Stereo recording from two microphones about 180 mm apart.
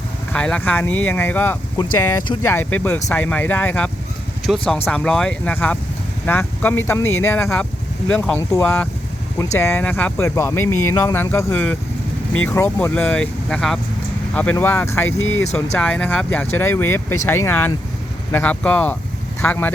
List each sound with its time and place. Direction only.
0.3 s speech: 5° left (ahead or behind)